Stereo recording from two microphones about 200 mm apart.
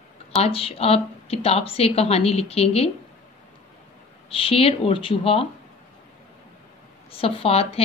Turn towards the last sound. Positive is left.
turn(degrees=30)  # may be behind; listen again after turning